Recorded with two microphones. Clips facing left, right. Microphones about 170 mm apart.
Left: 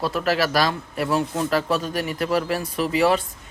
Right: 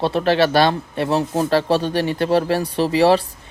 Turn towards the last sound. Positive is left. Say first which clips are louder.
# right 5 dB
turn(degrees=-30)  # may be behind; listen again after turning